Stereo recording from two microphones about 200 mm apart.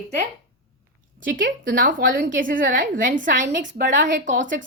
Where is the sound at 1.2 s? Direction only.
45° right (ahead or behind).